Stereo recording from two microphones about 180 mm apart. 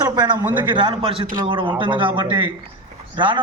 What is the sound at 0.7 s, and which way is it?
A man's voice, 30° right (ahead or behind).